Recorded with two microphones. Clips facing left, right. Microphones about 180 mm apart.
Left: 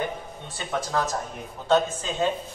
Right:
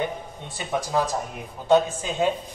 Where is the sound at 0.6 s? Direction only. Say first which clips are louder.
Right 2 dB; 10° right (ahead or behind).